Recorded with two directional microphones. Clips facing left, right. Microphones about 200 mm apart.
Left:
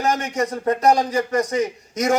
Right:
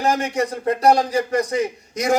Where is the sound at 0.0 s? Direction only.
35° right (ahead or behind).